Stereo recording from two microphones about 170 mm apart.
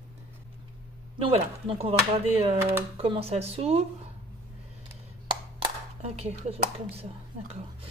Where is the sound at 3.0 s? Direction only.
35° right (ahead or behind).